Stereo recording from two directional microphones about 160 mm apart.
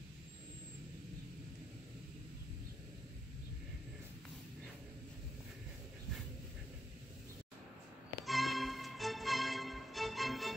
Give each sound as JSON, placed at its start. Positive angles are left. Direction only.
{"t": 8.3, "sound": "music", "side_deg": 0}